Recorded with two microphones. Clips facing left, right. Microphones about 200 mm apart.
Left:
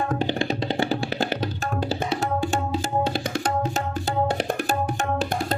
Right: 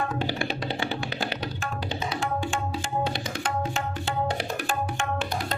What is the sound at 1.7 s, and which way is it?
Tabla, 50° left (ahead or behind).